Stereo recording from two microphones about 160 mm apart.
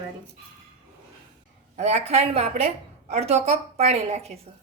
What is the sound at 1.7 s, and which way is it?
A woman's voice, 45° right (ahead or behind).